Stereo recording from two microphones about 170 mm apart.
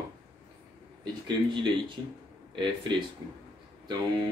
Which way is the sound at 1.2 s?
25° right (ahead or behind).